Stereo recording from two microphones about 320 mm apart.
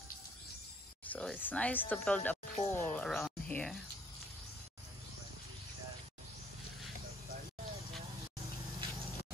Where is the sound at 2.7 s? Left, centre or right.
Centre.